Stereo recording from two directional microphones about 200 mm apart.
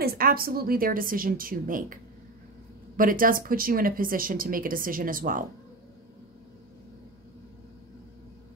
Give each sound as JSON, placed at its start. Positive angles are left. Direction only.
{"t": 0.0, "sound": "speech", "side_deg": -50}
{"t": 3.0, "sound": "speech", "side_deg": -45}